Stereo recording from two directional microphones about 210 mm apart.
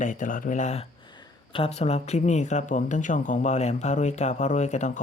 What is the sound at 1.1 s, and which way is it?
Speech, 25° left (ahead or behind).